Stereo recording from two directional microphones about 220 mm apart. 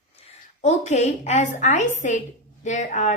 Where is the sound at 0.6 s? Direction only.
30° left (ahead or behind).